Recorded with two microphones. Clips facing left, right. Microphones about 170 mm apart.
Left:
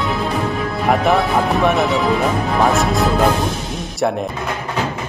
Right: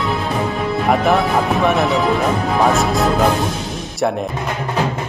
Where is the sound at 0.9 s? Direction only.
Centre (ahead or behind).